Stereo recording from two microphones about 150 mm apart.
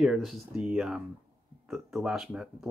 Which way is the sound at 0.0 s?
Centre (ahead or behind).